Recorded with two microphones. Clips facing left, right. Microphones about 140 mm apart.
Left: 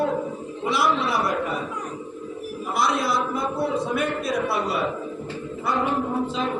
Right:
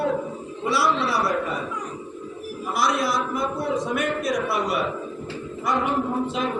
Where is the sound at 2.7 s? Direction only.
25° left (ahead or behind).